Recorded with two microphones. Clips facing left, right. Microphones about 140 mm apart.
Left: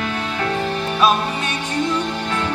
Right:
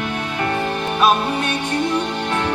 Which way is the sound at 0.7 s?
55° right (ahead or behind).